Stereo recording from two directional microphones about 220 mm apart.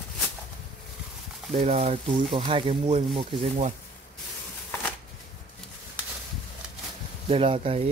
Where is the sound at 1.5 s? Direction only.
30° right (ahead or behind).